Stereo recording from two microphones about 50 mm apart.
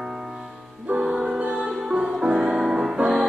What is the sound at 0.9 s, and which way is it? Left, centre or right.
Music, centre.